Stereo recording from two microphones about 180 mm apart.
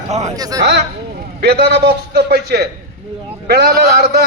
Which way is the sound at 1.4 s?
65° right (ahead or behind).